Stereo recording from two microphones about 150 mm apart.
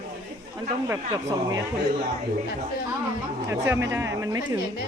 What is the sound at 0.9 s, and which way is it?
Speech, 20° right (ahead or behind).